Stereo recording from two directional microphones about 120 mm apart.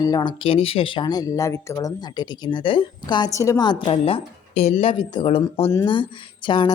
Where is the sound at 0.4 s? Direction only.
50° left (ahead or behind).